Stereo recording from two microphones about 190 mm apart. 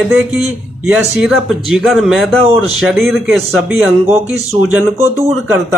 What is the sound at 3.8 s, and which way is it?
Speech, 10° right (ahead or behind).